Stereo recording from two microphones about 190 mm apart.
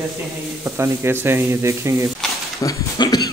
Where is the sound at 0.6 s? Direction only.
15° right (ahead or behind).